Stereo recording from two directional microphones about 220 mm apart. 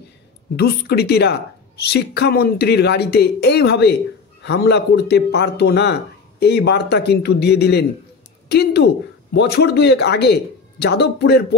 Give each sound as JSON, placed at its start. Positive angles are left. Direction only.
{"t": 0.6, "sound": "a woman's voice", "side_deg": 45}